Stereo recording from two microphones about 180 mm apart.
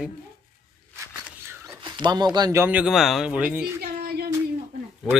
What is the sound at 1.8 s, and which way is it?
Speech, 25° right (ahead or behind).